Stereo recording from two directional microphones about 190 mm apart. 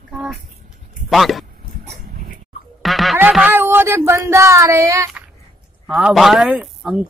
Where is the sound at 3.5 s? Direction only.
10° right (ahead or behind).